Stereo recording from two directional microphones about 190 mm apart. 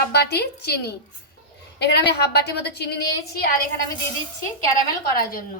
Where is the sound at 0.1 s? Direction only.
60° left (ahead or behind).